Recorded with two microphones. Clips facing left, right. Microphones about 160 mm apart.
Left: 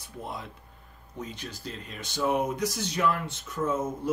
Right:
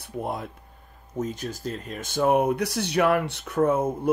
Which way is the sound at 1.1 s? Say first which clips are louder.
Right 9 dB; 45° right (ahead or behind).